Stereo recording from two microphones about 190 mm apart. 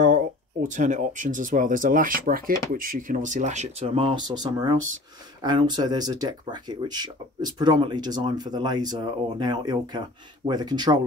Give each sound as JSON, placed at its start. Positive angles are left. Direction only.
{"t": 0.7, "sound": "speech", "side_deg": -40}